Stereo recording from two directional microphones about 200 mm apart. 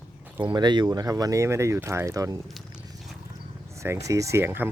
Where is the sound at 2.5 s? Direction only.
Centre (ahead or behind).